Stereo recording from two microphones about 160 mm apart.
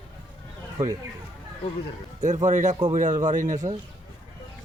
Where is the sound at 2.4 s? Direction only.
50° right (ahead or behind).